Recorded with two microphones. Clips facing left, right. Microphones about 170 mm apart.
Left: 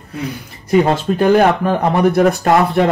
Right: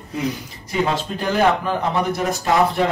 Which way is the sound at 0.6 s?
55° left (ahead or behind).